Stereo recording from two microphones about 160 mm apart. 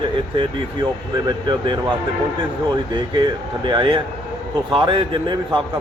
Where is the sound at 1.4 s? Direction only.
30° right (ahead or behind).